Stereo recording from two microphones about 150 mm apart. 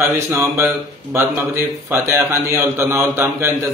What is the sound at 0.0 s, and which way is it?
A man's voice, 15° right (ahead or behind).